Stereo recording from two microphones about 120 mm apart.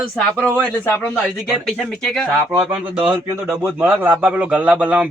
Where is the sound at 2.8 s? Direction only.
15° right (ahead or behind).